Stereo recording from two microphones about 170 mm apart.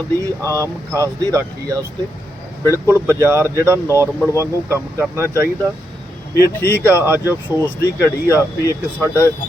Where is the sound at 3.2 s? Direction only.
15° right (ahead or behind).